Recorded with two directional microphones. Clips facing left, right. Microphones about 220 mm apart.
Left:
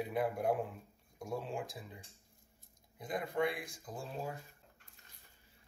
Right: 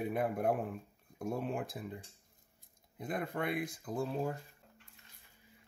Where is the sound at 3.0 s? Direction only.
60° right (ahead or behind).